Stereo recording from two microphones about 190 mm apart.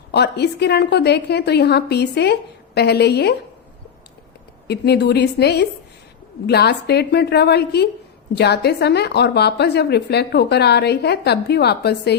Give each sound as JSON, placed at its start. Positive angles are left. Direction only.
{"t": 0.1, "sound": "a woman's voice", "side_deg": 60}
{"t": 4.7, "sound": "a woman's voice", "side_deg": 60}